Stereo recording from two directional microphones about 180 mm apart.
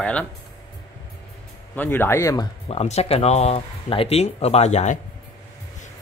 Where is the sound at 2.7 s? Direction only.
35° left (ahead or behind).